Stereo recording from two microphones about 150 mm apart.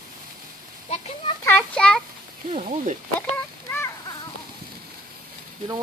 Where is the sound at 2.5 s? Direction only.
45° right (ahead or behind).